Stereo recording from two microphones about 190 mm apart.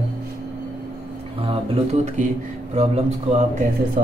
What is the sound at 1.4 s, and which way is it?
Speech, 30° right (ahead or behind).